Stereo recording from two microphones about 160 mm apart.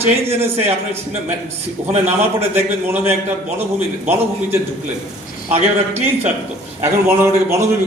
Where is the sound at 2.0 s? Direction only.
15° right (ahead or behind).